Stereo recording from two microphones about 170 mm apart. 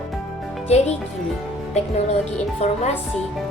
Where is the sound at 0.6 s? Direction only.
40° left (ahead or behind).